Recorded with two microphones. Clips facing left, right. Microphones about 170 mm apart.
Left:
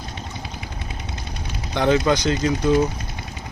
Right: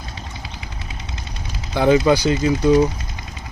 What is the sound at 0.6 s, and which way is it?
Vehicle, 55° left (ahead or behind).